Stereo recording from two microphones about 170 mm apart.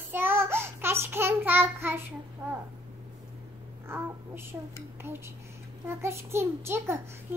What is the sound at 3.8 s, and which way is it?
Speech, 15° right (ahead or behind).